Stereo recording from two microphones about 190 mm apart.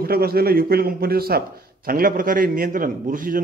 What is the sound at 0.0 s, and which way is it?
A man's voice, 55° right (ahead or behind).